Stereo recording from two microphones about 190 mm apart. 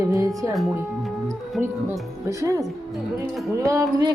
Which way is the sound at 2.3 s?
15° right (ahead or behind).